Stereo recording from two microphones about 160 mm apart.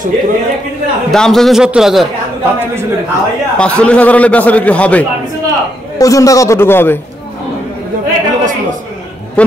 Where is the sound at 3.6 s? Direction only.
5° left (ahead or behind).